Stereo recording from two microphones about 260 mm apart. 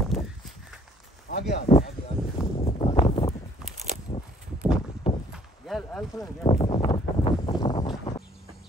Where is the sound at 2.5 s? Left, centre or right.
Left.